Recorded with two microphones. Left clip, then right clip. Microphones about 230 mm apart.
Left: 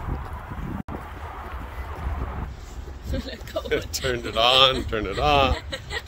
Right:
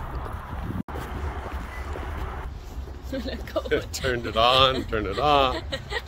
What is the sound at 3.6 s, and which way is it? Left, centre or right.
Speech, centre.